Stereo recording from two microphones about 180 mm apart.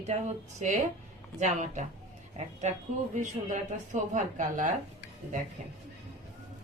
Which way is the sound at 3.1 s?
45° right (ahead or behind).